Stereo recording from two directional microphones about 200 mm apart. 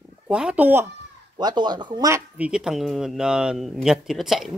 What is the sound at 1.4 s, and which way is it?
Speech, 20° right (ahead or behind).